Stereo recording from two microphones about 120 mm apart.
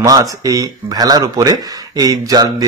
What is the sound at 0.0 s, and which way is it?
Speech, 30° right (ahead or behind).